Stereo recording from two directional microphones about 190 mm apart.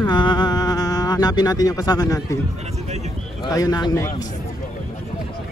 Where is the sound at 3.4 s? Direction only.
20° left (ahead or behind).